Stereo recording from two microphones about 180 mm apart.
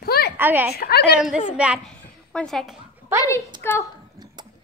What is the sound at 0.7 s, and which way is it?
Speech, 60° left (ahead or behind).